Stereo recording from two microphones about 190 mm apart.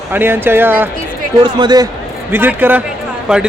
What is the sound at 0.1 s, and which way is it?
Speech, 10° right (ahead or behind).